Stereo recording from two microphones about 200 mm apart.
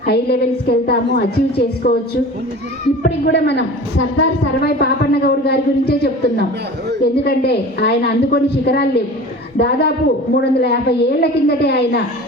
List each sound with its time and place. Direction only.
0.1 s a woman's voice: 55° left (ahead or behind)
3.0 s a woman's voice: 55° left (ahead or behind)